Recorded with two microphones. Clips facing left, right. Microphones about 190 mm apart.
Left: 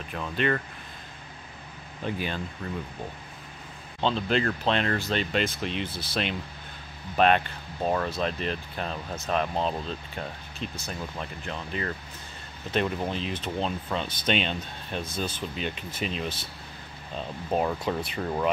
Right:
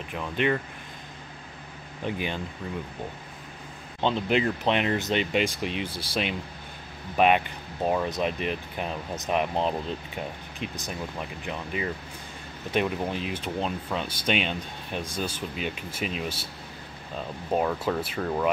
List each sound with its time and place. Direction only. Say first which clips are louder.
0.1 s speech: right 1 dB; 15° right (ahead or behind)
2.0 s speech: right 1 dB; 15° right (ahead or behind)
4.0 s speech: right 1 dB; 15° right (ahead or behind)
17.5 s speech: right 1 dB; 5° right (ahead or behind)